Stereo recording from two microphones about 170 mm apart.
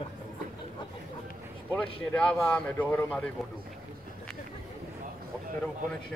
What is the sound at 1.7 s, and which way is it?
Speech, 10° left (ahead or behind).